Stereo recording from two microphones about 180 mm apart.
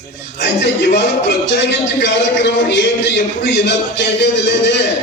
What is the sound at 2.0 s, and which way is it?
A man's voice, 75° left (ahead or behind).